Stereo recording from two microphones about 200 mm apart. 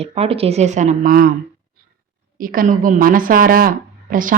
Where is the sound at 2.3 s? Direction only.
45° right (ahead or behind).